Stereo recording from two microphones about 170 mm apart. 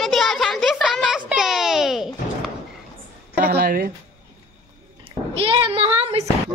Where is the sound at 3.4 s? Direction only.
65° right (ahead or behind).